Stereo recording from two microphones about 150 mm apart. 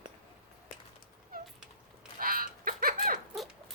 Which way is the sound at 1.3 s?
75° right (ahead or behind).